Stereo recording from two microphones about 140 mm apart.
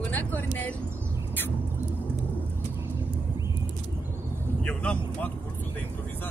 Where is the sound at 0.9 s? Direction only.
20° right (ahead or behind).